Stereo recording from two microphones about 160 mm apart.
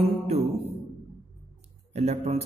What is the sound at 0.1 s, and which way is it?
Music, 40° right (ahead or behind).